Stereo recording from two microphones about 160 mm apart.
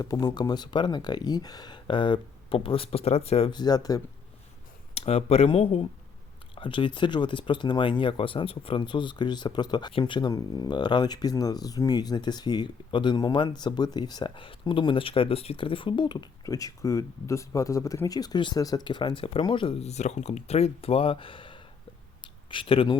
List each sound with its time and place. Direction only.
0.0 s speech: 25° left (ahead or behind)
4.9 s speech: 40° left (ahead or behind)
22.2 s a sound: 30° left (ahead or behind)